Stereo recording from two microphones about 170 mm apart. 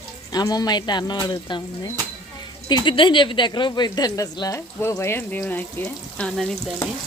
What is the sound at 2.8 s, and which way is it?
Speech, 30° left (ahead or behind).